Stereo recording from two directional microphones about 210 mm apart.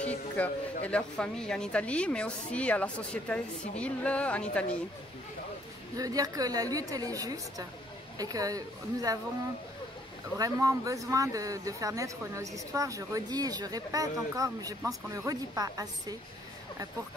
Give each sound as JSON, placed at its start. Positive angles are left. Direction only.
{"t": 0.4, "sound": "a man's voice", "side_deg": 5}
{"t": 5.9, "sound": "speech", "side_deg": -15}
{"t": 10.3, "sound": "speech", "side_deg": -15}